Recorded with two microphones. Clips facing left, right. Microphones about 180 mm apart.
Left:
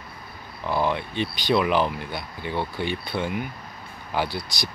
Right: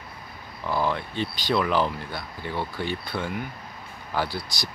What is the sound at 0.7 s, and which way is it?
Speech, 20° left (ahead or behind).